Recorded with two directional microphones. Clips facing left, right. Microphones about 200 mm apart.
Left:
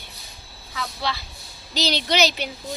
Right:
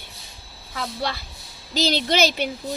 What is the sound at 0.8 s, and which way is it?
Speech, 50° right (ahead or behind).